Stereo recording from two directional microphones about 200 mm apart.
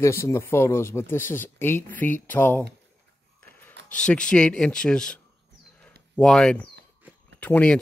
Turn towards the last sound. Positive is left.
turn(degrees=5)  # may be behind; listen again after turning